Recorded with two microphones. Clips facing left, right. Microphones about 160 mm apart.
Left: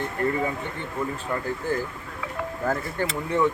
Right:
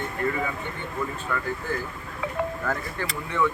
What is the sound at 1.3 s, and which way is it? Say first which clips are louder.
Speech: left 1 dB; 35° left (ahead or behind).